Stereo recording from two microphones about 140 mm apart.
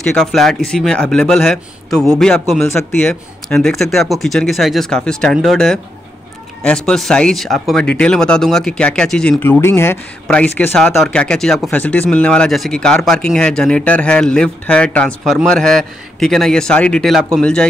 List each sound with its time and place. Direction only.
0.0 s speech: 5° left (ahead or behind)
9.4 s speech: 15° left (ahead or behind)